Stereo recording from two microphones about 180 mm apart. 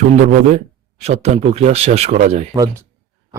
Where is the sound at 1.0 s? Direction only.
35° right (ahead or behind).